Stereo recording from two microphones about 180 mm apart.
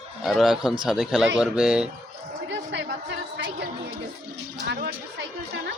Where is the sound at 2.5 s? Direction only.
75° right (ahead or behind).